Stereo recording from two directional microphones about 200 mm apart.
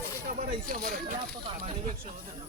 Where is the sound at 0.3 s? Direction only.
45° right (ahead or behind).